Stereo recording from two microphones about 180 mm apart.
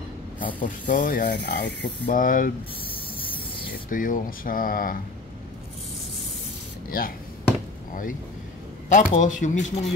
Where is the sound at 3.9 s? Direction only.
50° left (ahead or behind).